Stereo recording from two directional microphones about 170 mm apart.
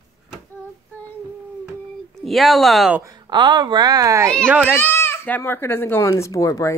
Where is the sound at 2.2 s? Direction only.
Centre (ahead or behind).